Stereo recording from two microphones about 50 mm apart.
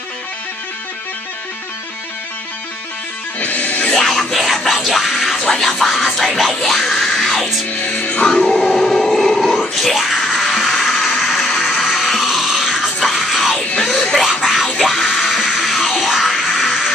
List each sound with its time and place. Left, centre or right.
3.3 s music: left
3.9 s music: centre
4.6 s music: centre
7.8 s music: left
8.2 s a sound: centre
14.4 s music: centre